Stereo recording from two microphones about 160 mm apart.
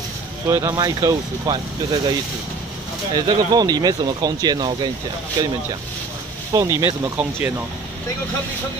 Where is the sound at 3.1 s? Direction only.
25° right (ahead or behind).